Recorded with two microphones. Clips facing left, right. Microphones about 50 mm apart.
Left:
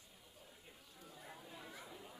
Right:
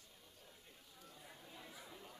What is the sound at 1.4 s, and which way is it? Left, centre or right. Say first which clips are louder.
Chatter: even; centre.